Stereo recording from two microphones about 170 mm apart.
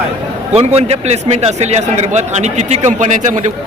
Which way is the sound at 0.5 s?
35° right (ahead or behind).